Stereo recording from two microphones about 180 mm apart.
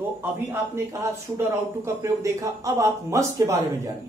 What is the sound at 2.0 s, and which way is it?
A man's voice, 15° right (ahead or behind).